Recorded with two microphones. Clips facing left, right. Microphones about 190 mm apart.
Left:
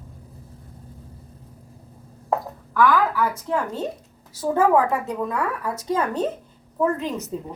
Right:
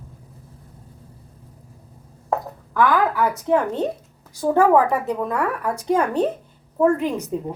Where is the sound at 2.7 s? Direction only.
20° right (ahead or behind).